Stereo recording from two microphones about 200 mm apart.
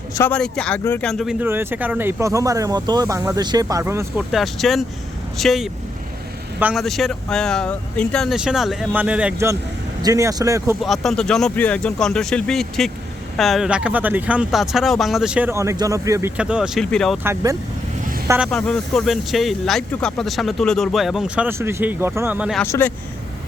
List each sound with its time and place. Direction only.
0.1 s speech: 10° left (ahead or behind); by 4.0 s 15° right (ahead or behind)
4.3 s speech: centre (ahead or behind); by 10.8 s 15° right (ahead or behind)
10.8 s speech: centre (ahead or behind)
17.2 s speech: 15° right (ahead or behind)
18.3 s speech: centre (ahead or behind)
22.6 s speech: 15° left (ahead or behind)